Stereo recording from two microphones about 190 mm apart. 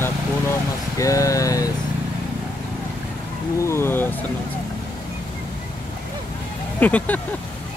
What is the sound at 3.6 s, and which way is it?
Speech, 15° left (ahead or behind).